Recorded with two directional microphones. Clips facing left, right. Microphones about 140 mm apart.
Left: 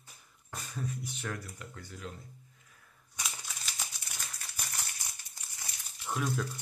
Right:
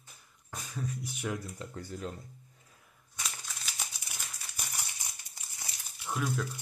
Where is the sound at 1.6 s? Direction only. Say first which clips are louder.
Right 6 dB; 35° right (ahead or behind).